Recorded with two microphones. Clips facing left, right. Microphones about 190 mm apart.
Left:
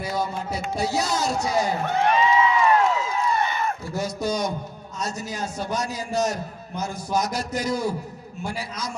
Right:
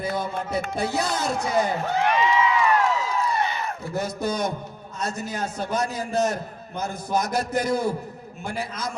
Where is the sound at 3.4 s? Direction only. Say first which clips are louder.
Left 3 dB; 50° left (ahead or behind).